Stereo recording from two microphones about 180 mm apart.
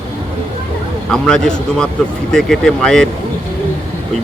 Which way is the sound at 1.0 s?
5° left (ahead or behind).